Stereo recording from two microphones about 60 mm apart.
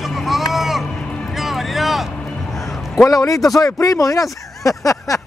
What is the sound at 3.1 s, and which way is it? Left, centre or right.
Speech, left.